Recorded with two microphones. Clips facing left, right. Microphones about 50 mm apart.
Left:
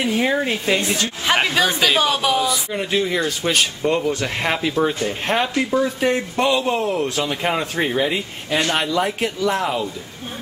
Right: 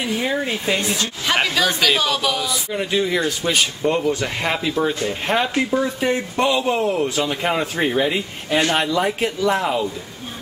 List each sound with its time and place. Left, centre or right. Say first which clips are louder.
0.0 s speech: left 3 dB; centre
0.7 s speech: left 1 dB; left
1.7 s speech: left 1 dB; centre
2.4 s speech: left 2 dB; centre
4.6 s speech: left 1 dB; centre